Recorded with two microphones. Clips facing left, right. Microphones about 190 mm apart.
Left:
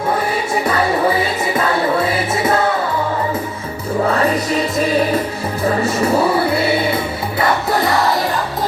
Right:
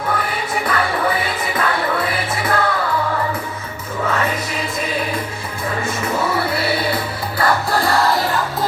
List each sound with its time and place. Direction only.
0.7 s music: 25° left (ahead or behind)
4.0 s music: 35° left (ahead or behind)